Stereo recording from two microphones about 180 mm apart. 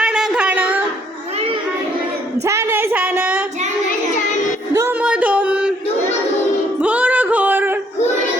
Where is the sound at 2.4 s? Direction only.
15° right (ahead or behind).